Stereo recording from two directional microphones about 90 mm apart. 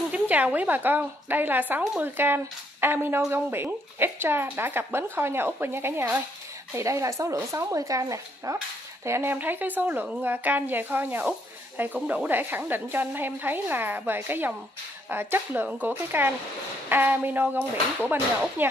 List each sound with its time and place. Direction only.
0.1 s a woman's voice: 15° right (ahead or behind)